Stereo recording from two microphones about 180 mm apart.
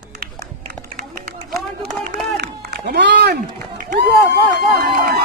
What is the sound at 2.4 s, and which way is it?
Music, 65° right (ahead or behind).